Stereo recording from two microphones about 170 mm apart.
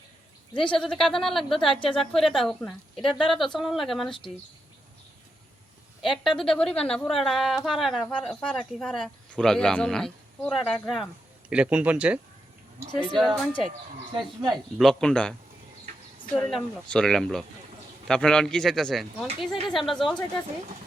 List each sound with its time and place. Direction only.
0.5 s speech: 30° left (ahead or behind)
0.9 s speech: centre (ahead or behind)
6.0 s speech: centre (ahead or behind)
14.1 s speech: 25° right (ahead or behind)
14.5 s speech: centre (ahead or behind)